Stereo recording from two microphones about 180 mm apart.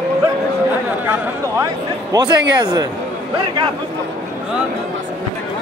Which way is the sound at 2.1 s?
25° right (ahead or behind).